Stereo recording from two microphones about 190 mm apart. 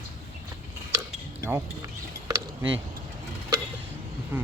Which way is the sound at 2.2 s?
20° right (ahead or behind).